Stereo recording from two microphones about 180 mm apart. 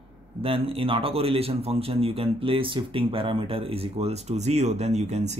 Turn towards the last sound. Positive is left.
turn(degrees=-40)  # may be behind; listen again after turning